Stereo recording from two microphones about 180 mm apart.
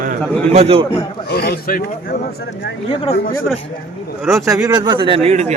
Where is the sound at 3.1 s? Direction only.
60° left (ahead or behind).